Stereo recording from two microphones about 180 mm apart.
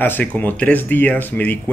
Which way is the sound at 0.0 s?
10° left (ahead or behind).